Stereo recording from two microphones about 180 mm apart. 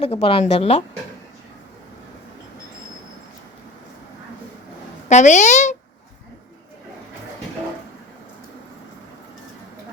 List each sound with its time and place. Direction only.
0.0 s speech: 35° left (ahead or behind)
5.0 s speech: 40° left (ahead or behind)